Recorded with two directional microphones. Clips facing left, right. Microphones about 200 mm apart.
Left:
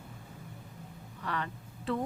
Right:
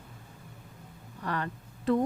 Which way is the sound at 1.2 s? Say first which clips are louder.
Right 3 dB; 45° right (ahead or behind).